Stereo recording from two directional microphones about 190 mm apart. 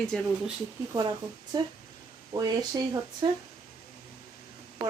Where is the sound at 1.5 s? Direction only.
20° right (ahead or behind).